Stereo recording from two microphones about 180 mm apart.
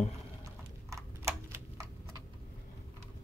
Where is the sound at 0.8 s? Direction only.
15° right (ahead or behind).